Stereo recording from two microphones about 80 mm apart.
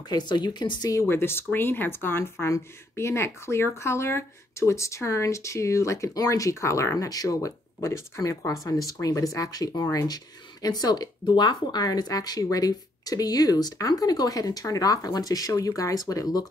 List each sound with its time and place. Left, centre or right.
0.1 s a woman's voice: left
1.0 s speech: left